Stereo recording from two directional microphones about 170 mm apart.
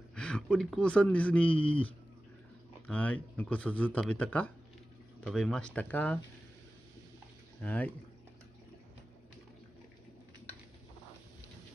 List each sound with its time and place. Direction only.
0.1 s speech: 5° left (ahead or behind)
1.5 s speech: 30° left (ahead or behind)
2.9 s speech: 10° left (ahead or behind)
7.6 s speech: 10° left (ahead or behind)